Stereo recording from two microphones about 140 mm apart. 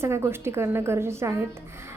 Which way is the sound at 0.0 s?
20° right (ahead or behind).